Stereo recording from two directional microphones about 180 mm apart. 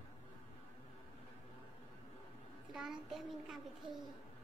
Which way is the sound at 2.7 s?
Centre (ahead or behind).